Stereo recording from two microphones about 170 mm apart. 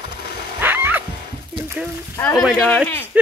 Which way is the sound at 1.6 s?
15° right (ahead or behind).